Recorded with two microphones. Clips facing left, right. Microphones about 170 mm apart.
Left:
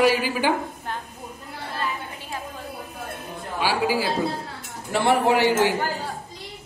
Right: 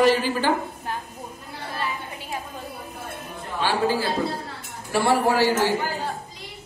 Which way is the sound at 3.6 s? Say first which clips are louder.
Even; 10° left (ahead or behind).